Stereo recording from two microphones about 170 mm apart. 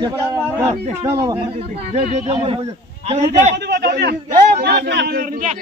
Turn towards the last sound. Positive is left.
turn(degrees=-50)  # may be behind; listen again after turning